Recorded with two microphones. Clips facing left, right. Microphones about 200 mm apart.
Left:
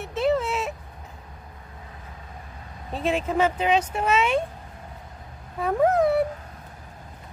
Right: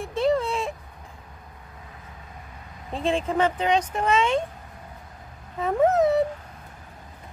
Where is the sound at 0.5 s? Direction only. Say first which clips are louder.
Even; 30° right (ahead or behind).